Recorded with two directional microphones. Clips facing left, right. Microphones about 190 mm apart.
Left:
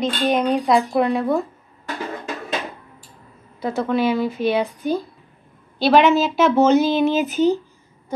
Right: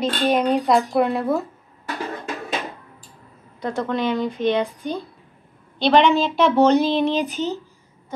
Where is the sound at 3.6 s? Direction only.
5° left (ahead or behind).